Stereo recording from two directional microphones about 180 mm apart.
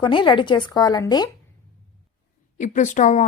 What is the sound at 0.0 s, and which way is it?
Speech, 25° left (ahead or behind).